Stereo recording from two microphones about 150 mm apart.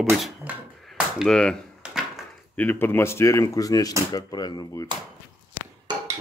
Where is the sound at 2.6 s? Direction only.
15° left (ahead or behind).